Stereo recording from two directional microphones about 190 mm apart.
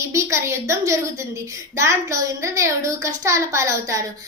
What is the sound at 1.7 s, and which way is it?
A woman's voice, 15° right (ahead or behind).